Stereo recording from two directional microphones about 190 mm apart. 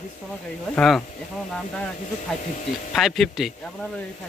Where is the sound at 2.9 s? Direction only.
Centre (ahead or behind).